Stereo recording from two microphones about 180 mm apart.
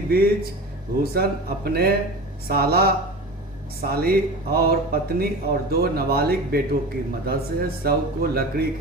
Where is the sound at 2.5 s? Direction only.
55° right (ahead or behind).